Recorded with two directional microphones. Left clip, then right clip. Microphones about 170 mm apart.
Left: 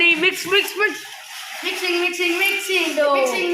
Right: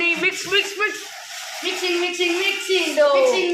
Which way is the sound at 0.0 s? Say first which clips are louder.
Left 4 dB; 40° left (ahead or behind).